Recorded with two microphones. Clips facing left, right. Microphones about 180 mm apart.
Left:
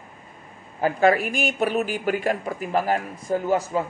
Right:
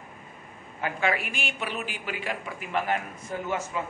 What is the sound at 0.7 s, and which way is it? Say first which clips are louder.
Speech: left 9 dB; 40° left (ahead or behind).